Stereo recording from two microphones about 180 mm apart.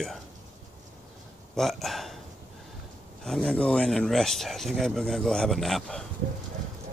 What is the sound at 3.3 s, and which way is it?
Speech, 5° left (ahead or behind).